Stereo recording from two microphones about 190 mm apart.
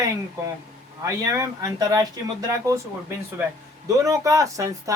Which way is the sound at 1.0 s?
15° right (ahead or behind).